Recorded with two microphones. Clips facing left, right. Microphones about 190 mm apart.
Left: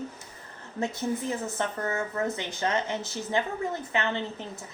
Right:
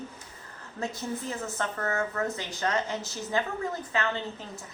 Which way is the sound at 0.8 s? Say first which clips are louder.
Left 4 dB; 20° left (ahead or behind).